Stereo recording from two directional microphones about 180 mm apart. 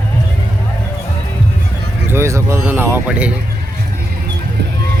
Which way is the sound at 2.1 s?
15° right (ahead or behind).